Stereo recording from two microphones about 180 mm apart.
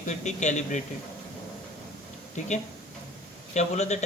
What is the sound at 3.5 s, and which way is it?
Speech, 40° left (ahead or behind).